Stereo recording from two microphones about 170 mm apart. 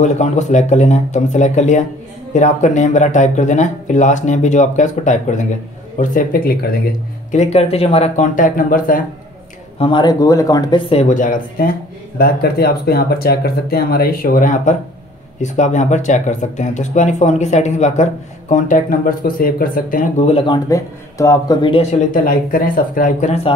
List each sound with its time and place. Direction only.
0.0 s speech: 45° left (ahead or behind); by 6.8 s 65° left (ahead or behind)
7.2 s speech: 40° left (ahead or behind)
9.8 s speech: 30° left (ahead or behind)
10.9 s speech: 40° left (ahead or behind)
21.9 s speech: 50° left (ahead or behind)